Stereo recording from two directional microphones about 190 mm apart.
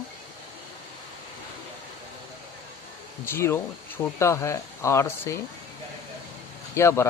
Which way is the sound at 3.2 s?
15° left (ahead or behind).